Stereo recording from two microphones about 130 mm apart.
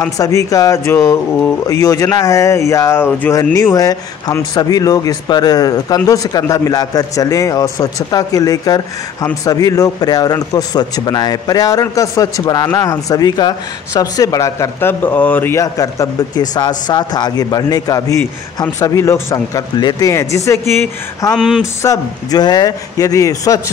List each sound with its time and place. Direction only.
0.2 s speech: 25° left (ahead or behind)
3.7 s speech: 25° left (ahead or behind)
15.5 s speech: 25° left (ahead or behind)
21.4 s speech: centre (ahead or behind)
21.8 s speech: 30° left (ahead or behind)